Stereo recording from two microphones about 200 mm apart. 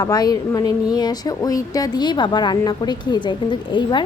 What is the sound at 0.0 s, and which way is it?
A woman's voice, 20° left (ahead or behind).